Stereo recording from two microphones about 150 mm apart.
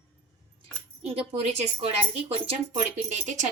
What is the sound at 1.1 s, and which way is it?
A woman's voice, 40° right (ahead or behind).